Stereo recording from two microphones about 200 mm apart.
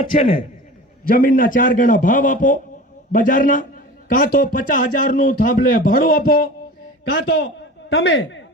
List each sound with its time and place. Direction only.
1.0 s a man's voice: 45° left (ahead or behind)
7.1 s a man's voice: 65° left (ahead or behind)